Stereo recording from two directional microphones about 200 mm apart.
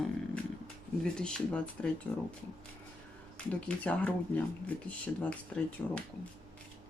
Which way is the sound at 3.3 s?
5° left (ahead or behind).